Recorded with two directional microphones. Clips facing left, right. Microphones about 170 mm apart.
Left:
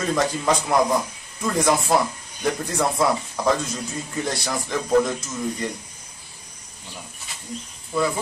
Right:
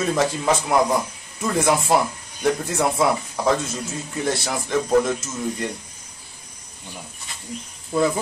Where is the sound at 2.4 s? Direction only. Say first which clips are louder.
Right 2 dB; 5° right (ahead or behind).